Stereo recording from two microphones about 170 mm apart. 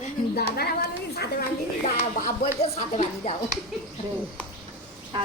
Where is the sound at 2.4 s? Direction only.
40° left (ahead or behind).